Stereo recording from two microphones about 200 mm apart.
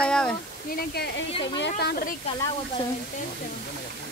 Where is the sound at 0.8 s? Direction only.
55° left (ahead or behind).